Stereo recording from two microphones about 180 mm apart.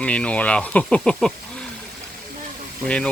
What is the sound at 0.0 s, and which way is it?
Speech, 5° left (ahead or behind).